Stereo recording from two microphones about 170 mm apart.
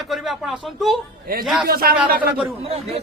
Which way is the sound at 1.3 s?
60° right (ahead or behind).